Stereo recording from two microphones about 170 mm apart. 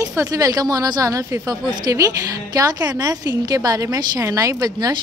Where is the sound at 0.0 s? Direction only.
20° right (ahead or behind).